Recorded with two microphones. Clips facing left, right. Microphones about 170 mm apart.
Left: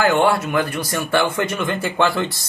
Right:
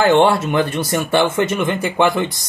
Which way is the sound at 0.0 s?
25° right (ahead or behind).